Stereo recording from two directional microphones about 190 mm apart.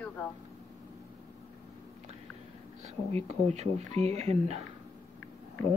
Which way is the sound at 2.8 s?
35° right (ahead or behind).